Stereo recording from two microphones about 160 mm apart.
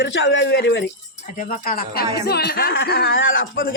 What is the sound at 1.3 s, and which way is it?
Speech, 60° left (ahead or behind).